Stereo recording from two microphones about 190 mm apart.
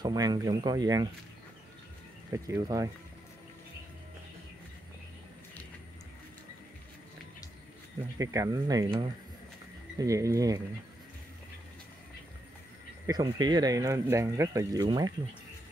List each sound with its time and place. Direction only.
0.0 s speech: 20° right (ahead or behind)
2.3 s speech: 15° right (ahead or behind)
8.2 s speech: 15° right (ahead or behind)
13.0 s speech: 20° right (ahead or behind)